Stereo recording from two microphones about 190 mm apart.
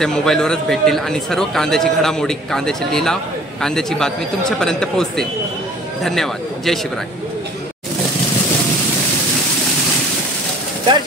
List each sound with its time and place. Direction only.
0.0 s a man's voice: 5° left (ahead or behind)